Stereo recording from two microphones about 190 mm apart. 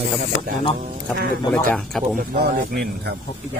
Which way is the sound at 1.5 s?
5° left (ahead or behind).